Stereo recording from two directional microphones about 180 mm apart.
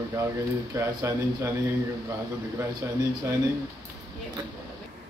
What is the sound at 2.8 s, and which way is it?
Speech, 15° right (ahead or behind).